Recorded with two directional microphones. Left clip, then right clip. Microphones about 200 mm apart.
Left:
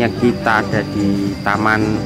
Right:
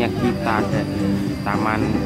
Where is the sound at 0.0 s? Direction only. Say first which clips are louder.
Left 5 dB; 20° left (ahead or behind).